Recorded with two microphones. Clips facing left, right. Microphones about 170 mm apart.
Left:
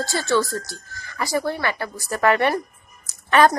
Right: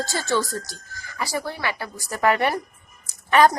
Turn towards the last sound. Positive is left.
turn(degrees=-15)  # may be behind; listen again after turning